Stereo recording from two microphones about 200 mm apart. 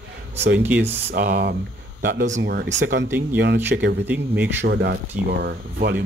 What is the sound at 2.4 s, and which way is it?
Speech, 60° right (ahead or behind).